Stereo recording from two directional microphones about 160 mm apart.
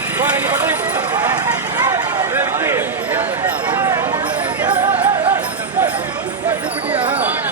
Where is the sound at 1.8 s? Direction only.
15° right (ahead or behind).